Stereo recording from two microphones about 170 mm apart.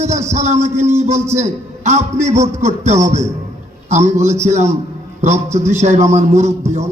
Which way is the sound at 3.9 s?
45° right (ahead or behind).